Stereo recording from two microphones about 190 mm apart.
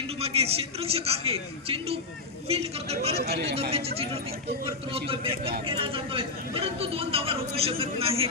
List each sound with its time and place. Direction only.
0.2 s a man's voice: 30° right (ahead or behind)